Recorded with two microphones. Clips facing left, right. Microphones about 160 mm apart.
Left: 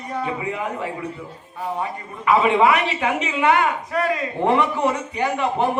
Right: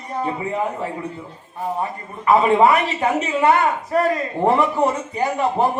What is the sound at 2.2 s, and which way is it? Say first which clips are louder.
Speech: right 2 dB; 40° right (ahead or behind).